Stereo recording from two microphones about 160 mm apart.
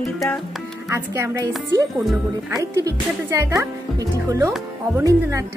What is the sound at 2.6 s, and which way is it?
Speech, 20° right (ahead or behind).